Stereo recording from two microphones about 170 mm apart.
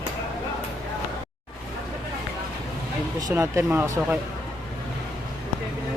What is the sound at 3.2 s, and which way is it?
A man's voice, 20° right (ahead or behind).